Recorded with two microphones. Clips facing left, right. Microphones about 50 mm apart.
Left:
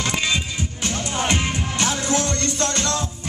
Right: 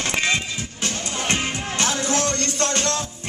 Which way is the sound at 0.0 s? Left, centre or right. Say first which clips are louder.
Right 1 dB; right.